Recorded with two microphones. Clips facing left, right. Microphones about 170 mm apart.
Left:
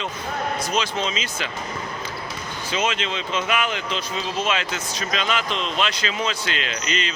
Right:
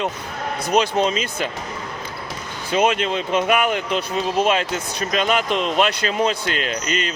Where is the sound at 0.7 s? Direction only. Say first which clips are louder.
Right 11 dB; 60° right (ahead or behind).